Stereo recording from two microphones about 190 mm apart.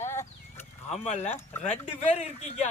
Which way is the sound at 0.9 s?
35° left (ahead or behind).